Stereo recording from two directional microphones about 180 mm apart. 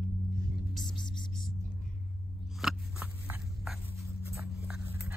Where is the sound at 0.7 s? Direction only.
5° left (ahead or behind).